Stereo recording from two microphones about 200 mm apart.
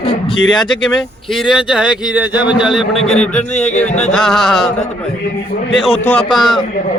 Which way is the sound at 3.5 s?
35° left (ahead or behind).